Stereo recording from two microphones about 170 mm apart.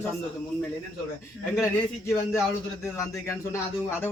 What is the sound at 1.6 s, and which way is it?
Speech, 15° left (ahead or behind).